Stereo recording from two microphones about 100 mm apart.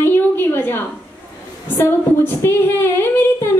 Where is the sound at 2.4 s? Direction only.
25° left (ahead or behind).